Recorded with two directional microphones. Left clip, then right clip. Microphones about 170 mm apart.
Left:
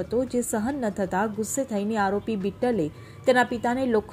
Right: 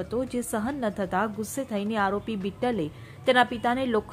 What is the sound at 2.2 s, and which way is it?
Speech, 40° right (ahead or behind).